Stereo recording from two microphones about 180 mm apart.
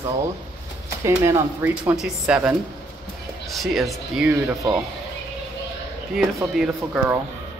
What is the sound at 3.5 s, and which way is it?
Speech, centre (ahead or behind).